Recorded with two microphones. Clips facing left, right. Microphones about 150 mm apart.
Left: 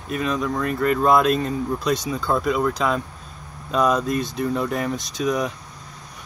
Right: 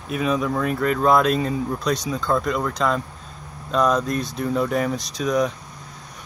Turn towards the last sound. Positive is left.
turn(degrees=5)  # may be behind; listen again after turning